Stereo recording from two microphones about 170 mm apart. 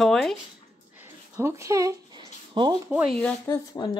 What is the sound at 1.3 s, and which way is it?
Speech, 15° right (ahead or behind).